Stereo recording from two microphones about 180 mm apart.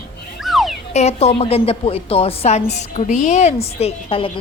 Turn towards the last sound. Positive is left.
turn(degrees=30)  # may be behind; listen again after turning